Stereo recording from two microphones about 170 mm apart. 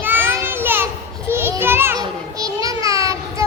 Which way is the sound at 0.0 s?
10° right (ahead or behind).